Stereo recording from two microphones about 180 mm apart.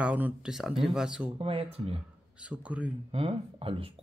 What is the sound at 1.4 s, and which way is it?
Speech, 35° right (ahead or behind).